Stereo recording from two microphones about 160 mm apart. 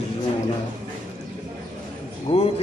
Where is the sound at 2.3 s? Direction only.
35° left (ahead or behind).